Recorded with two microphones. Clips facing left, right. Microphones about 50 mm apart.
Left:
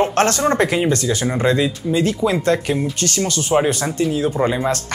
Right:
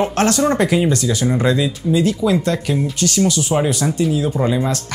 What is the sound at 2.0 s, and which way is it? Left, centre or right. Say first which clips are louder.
Speech: even; left.